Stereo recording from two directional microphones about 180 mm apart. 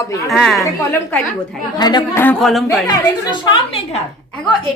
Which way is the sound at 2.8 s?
25° left (ahead or behind).